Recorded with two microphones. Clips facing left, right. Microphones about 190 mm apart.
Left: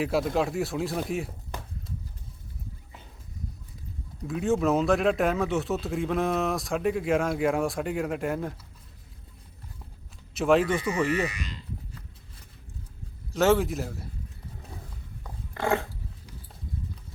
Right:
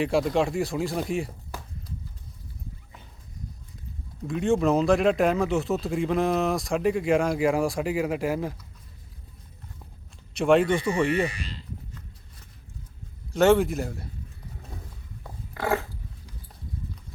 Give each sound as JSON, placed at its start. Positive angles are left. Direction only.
{"t": 0.0, "sound": "a man's voice", "side_deg": 0}
{"t": 4.2, "sound": "a man's voice", "side_deg": 0}
{"t": 10.3, "sound": "a man's voice", "side_deg": 0}
{"t": 11.3, "sound": "speech", "side_deg": -30}
{"t": 13.3, "sound": "a man's voice", "side_deg": 0}
{"t": 15.5, "sound": "a sound", "side_deg": -5}